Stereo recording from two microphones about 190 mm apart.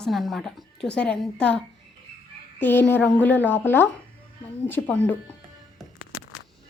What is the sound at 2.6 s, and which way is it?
A woman's voice, 10° left (ahead or behind).